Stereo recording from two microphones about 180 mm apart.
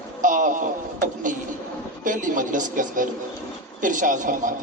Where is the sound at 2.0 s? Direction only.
45° right (ahead or behind).